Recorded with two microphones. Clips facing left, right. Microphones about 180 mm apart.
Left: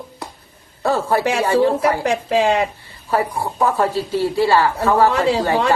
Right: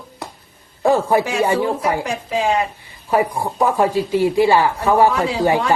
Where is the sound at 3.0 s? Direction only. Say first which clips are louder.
Right 2 dB; 15° right (ahead or behind).